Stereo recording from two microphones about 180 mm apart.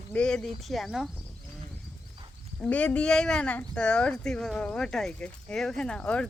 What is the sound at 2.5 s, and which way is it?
Speech, 10° left (ahead or behind).